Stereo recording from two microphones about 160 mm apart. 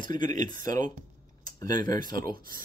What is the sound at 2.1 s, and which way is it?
Speech, 60° right (ahead or behind).